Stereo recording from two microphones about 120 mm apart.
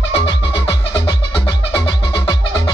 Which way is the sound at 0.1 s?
45° left (ahead or behind).